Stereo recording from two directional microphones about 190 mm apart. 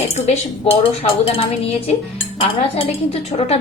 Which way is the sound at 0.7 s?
30° left (ahead or behind).